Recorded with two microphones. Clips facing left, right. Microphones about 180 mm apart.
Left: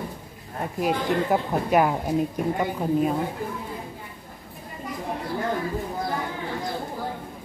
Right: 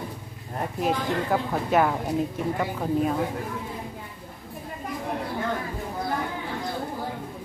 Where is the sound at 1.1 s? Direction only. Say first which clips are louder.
Left 2 dB; 15° left (ahead or behind).